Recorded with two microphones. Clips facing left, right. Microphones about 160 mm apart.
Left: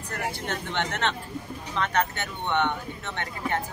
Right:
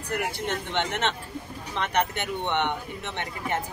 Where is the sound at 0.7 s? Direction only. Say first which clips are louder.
Even; 20° right (ahead or behind).